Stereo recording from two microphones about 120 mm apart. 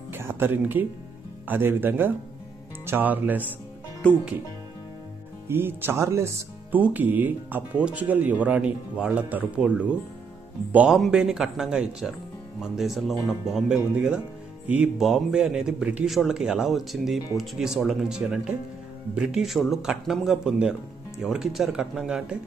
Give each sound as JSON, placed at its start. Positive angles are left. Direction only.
{"t": 0.1, "sound": "speech", "side_deg": -20}
{"t": 4.0, "sound": "speech", "side_deg": 10}
{"t": 5.5, "sound": "speech", "side_deg": -20}